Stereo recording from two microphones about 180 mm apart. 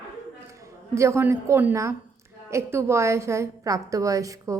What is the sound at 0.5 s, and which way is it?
A woman's voice, 15° right (ahead or behind).